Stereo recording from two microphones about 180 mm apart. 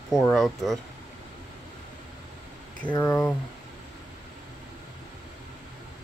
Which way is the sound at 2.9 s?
15° left (ahead or behind).